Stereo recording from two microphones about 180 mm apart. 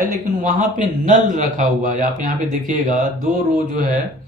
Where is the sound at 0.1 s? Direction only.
45° right (ahead or behind).